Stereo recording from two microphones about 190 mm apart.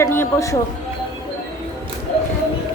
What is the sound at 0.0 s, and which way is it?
Speech, 15° left (ahead or behind).